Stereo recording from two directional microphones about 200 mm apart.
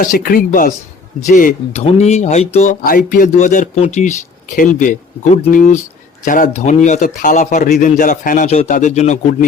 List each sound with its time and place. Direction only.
0.0 s speech: 45° left (ahead or behind)